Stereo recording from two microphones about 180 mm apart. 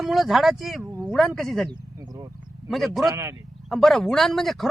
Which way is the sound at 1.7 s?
25° right (ahead or behind).